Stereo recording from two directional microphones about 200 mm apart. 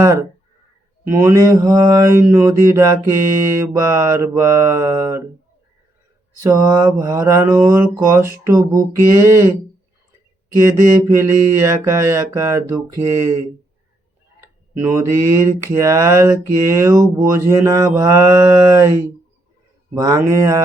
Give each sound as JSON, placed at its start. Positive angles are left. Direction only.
{"t": 0.0, "sound": "speech", "side_deg": -15}
{"t": 6.4, "sound": "speech", "side_deg": -15}
{"t": 10.6, "sound": "speech", "side_deg": -15}
{"t": 14.4, "sound": "speech", "side_deg": -10}